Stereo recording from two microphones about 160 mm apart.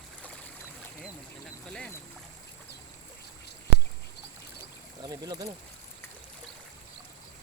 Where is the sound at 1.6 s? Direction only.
5° left (ahead or behind).